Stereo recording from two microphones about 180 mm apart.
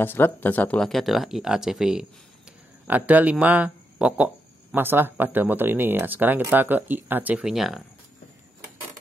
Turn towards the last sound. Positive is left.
turn(degrees=0)  # may be behind; listen again after turning